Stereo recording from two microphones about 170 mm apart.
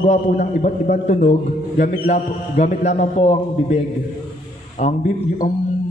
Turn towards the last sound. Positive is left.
turn(degrees=45)  # may be behind; listen again after turning